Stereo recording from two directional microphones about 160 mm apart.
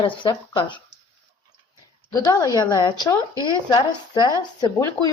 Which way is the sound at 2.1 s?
20° left (ahead or behind).